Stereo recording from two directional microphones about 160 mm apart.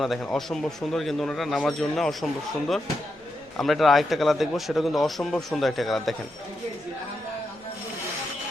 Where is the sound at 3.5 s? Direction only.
Centre (ahead or behind).